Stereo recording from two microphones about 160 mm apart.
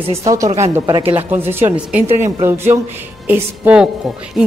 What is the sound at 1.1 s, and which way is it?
A woman's voice, 10° right (ahead or behind).